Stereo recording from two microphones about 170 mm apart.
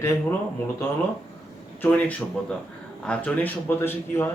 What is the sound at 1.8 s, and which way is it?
A man's voice, 10° left (ahead or behind).